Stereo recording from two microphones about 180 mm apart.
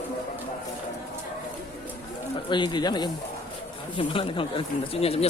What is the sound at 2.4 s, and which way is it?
Speech, 25° left (ahead or behind).